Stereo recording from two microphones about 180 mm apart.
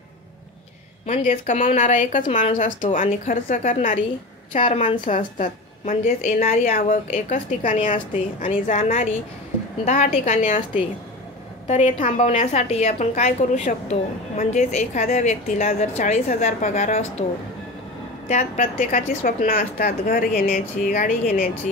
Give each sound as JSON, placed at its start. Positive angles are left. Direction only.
{"t": 1.0, "sound": "a woman's voice", "side_deg": 45}
{"t": 11.6, "sound": "a woman's voice", "side_deg": 40}
{"t": 18.3, "sound": "a woman's voice", "side_deg": 45}